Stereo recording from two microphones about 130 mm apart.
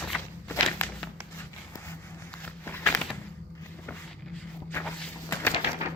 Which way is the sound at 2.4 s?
15° left (ahead or behind).